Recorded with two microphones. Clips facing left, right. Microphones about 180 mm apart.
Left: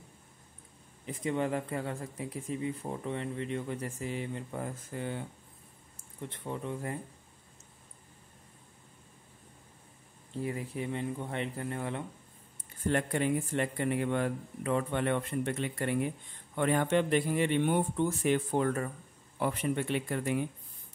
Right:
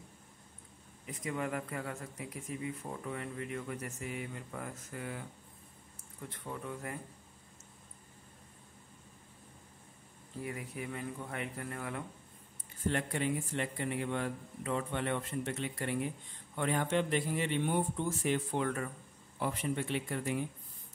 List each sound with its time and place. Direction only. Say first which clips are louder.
1.0 s speech: left 6 dB; 30° left (ahead or behind)
10.3 s speech: left 6 dB; 30° left (ahead or behind)
12.9 s speech: left 6 dB; 55° left (ahead or behind)
18.6 s speech: left 4 dB; 40° left (ahead or behind)
19.4 s speech: left 4 dB; 60° left (ahead or behind)